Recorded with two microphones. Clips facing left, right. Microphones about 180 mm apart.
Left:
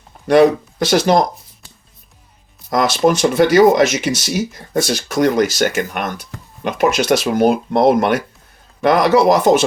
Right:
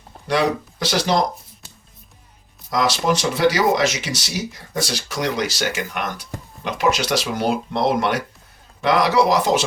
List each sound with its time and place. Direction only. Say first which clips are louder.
0.3 s speech: left 9 dB; 50° left (ahead or behind)
2.6 s speech: left 5 dB; 50° left (ahead or behind)